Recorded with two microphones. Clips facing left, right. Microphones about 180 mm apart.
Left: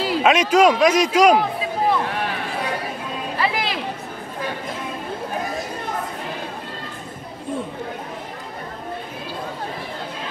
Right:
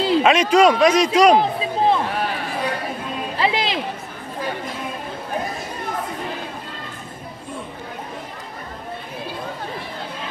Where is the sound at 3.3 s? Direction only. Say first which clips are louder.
Right 3 dB; 20° right (ahead or behind).